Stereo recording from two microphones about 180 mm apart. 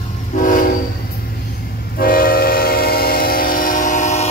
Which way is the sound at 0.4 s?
45° left (ahead or behind).